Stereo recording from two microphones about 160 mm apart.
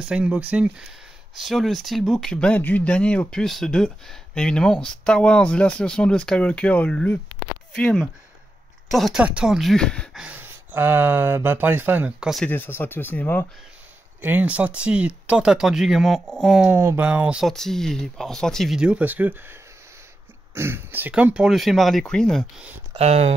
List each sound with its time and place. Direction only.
0.1 s speech: 5° right (ahead or behind)
10.2 s speech: 10° right (ahead or behind)
12.4 s speech: 15° left (ahead or behind)
14.2 s speech: 10° right (ahead or behind)
16.6 s speech: 15° right (ahead or behind)
20.5 s speech: 15° right (ahead or behind); by 22.7 s centre (ahead or behind)
22.9 s speech: 40° right (ahead or behind)